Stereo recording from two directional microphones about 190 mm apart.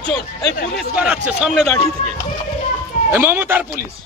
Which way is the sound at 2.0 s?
40° left (ahead or behind).